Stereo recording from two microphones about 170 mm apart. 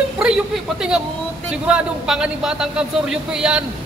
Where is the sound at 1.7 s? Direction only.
5° right (ahead or behind).